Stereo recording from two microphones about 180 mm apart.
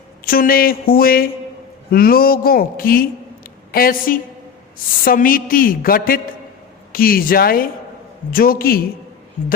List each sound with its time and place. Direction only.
0.3 s a man's voice: 55° left (ahead or behind)